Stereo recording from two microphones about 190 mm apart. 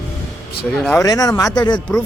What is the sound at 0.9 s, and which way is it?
Speech, 20° left (ahead or behind).